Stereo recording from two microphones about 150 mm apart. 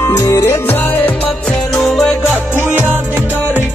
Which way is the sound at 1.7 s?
Centre (ahead or behind).